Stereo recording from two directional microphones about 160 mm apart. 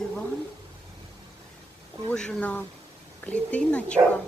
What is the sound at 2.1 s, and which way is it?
Speech, 5° left (ahead or behind).